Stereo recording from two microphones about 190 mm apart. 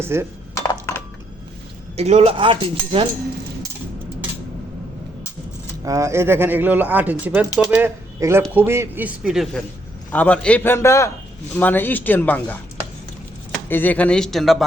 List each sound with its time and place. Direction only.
0.0 s speech: 15° right (ahead or behind)
0.7 s a sound: 15° left (ahead or behind)
2.0 s speech: 35° right (ahead or behind)
5.8 s a man's voice: 15° right (ahead or behind); by 14.6 s centre (ahead or behind)